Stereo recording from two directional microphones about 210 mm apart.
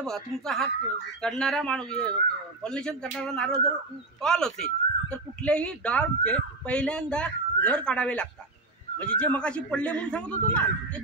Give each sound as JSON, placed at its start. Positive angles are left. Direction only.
{"t": 0.0, "sound": "speech", "side_deg": 0}